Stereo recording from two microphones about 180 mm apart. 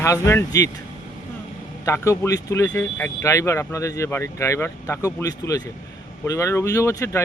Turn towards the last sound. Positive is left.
turn(degrees=15)  # may be behind; listen again after turning